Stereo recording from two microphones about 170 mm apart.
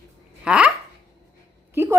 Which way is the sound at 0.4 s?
5° right (ahead or behind).